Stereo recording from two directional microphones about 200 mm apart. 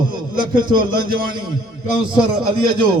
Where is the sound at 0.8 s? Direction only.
45° right (ahead or behind).